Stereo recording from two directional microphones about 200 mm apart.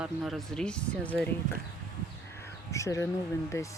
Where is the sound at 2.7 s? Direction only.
15° left (ahead or behind).